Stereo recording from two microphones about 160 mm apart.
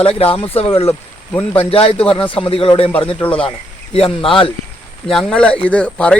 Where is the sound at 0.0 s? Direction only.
35° left (ahead or behind).